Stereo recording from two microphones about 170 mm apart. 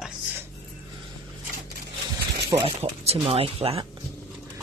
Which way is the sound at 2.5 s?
35° right (ahead or behind).